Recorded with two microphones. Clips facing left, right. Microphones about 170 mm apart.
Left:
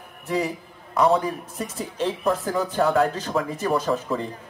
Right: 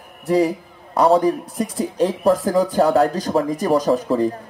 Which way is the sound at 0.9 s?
35° right (ahead or behind).